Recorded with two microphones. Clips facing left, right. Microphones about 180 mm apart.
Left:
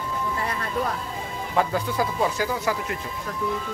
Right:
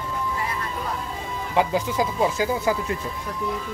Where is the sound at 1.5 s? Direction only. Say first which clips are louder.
Right 2 dB; 15° right (ahead or behind).